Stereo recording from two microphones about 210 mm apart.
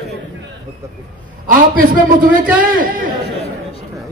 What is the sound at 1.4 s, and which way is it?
A man's voice, 40° right (ahead or behind).